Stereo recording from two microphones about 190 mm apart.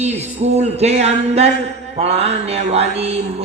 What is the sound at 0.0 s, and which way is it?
Music, 35° right (ahead or behind).